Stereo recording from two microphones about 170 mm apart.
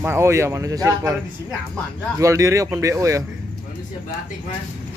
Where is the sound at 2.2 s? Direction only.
20° right (ahead or behind).